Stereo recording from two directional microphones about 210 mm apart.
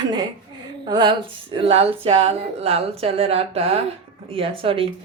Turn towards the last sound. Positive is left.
turn(degrees=-25)  # may be behind; listen again after turning